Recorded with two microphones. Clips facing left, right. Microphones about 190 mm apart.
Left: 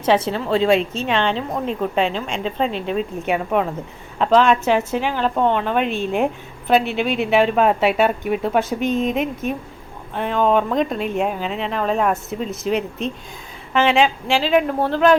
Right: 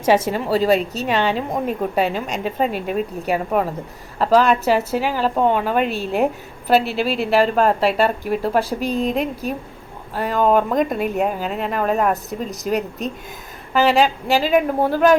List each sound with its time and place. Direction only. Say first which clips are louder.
0.3 s a woman's voice: even; 10° right (ahead or behind)
8.8 s speech: left 1 dB; 35° right (ahead or behind)
10.2 s a woman's voice: right 1 dB; 5° right (ahead or behind)